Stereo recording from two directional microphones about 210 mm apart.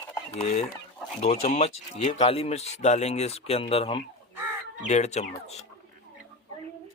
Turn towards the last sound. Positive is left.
turn(degrees=30)  # may be behind; listen again after turning